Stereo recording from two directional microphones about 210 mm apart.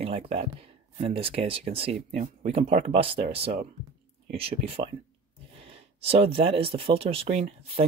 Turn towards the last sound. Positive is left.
turn(degrees=-30)  # may be behind; listen again after turning